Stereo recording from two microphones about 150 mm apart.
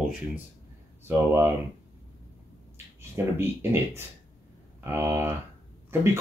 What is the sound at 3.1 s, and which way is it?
Speech, 15° right (ahead or behind).